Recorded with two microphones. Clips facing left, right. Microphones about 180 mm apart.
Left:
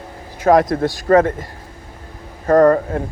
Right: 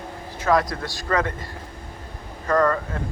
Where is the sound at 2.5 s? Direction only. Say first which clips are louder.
Left 9 dB; 45° left (ahead or behind).